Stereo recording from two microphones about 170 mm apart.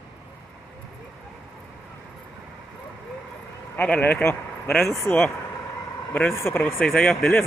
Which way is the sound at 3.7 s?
10° left (ahead or behind).